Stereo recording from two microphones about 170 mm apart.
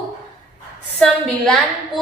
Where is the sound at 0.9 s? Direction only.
5° left (ahead or behind).